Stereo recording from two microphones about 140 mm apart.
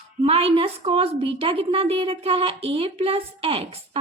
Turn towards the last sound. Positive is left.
turn(degrees=-45)  # may be behind; listen again after turning